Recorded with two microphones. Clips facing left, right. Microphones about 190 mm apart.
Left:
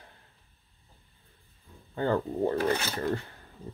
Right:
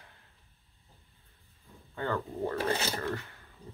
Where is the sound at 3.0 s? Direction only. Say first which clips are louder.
Left 5 dB; 35° left (ahead or behind).